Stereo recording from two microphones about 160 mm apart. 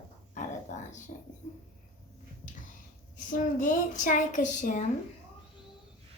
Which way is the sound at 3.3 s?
55° left (ahead or behind).